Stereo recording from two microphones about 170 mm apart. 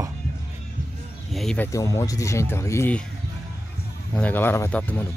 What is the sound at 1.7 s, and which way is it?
Speech, 20° left (ahead or behind).